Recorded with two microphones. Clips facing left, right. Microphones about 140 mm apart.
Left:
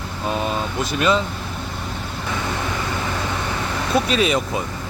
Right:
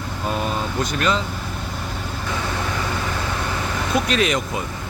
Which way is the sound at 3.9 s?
30° left (ahead or behind).